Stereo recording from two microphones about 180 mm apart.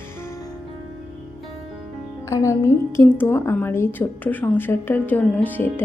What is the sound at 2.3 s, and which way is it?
A woman's voice, 20° left (ahead or behind).